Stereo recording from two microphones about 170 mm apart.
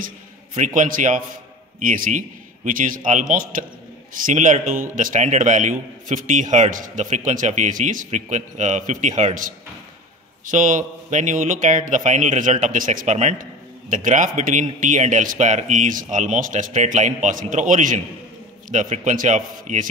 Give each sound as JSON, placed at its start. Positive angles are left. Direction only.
{"t": 0.7, "sound": "a man's voice", "side_deg": -50}